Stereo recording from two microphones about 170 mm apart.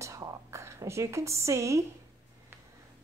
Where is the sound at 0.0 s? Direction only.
20° right (ahead or behind).